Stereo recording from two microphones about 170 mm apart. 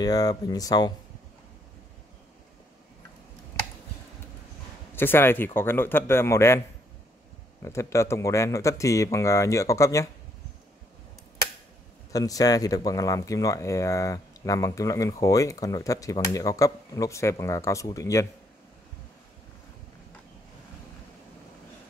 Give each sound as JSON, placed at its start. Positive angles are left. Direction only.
{"t": 0.0, "sound": "speech", "side_deg": 20}
{"t": 4.9, "sound": "speech", "side_deg": 15}
{"t": 7.6, "sound": "speech", "side_deg": 15}
{"t": 12.1, "sound": "speech", "side_deg": 20}